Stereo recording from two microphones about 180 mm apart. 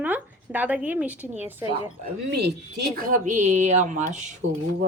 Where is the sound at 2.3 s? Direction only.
65° right (ahead or behind); by 4.3 s 40° right (ahead or behind).